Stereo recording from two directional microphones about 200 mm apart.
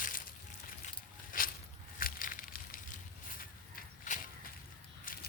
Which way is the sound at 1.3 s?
40° left (ahead or behind).